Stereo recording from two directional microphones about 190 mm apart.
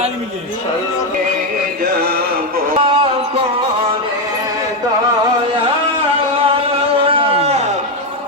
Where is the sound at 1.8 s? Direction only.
55° right (ahead or behind).